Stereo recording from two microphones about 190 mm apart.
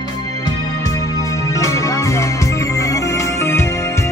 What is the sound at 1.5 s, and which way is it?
Music, 15° left (ahead or behind).